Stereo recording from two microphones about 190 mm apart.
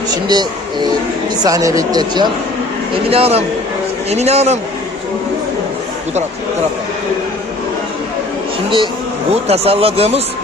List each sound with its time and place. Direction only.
0.1 s speech: 20° right (ahead or behind)
9.3 s speech: 30° right (ahead or behind)